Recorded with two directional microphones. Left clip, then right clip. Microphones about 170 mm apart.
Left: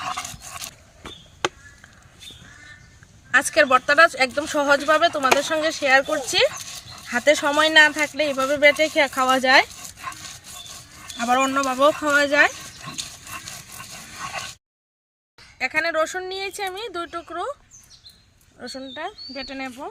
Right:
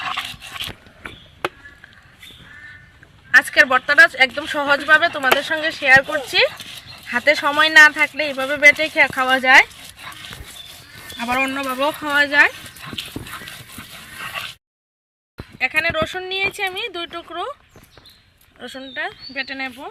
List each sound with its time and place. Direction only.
0.1 s dog: 15° left (ahead or behind)
3.3 s speech: 15° left (ahead or behind)
11.2 s speech: 10° left (ahead or behind)
15.5 s a sound: 5° left (ahead or behind)
18.6 s speech: centre (ahead or behind)